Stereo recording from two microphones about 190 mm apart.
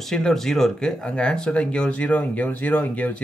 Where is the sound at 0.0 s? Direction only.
Centre (ahead or behind).